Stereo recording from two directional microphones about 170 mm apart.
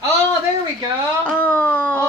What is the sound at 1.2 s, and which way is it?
Speech, 10° left (ahead or behind).